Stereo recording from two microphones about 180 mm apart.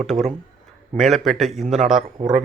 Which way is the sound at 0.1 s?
25° right (ahead or behind).